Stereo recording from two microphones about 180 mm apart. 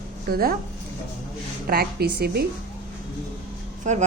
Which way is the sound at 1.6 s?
60° right (ahead or behind).